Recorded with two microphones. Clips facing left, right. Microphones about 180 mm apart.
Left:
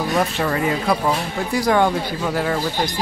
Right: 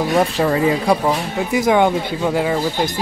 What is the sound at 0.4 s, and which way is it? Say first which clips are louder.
Speech: right 4 dB; 25° right (ahead or behind).